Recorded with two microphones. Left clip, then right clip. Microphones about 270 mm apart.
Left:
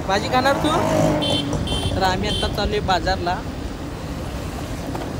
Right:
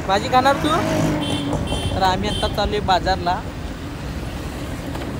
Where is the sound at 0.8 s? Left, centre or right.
Left.